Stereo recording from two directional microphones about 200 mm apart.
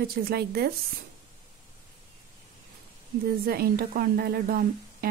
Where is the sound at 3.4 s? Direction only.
50° right (ahead or behind).